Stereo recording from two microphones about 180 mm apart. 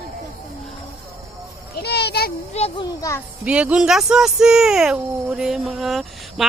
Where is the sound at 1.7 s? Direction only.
65° left (ahead or behind).